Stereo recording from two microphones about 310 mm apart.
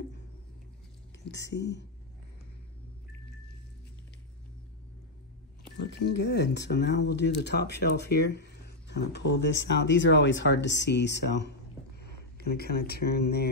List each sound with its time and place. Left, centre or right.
1.3 s speech: left
6.0 s speech: left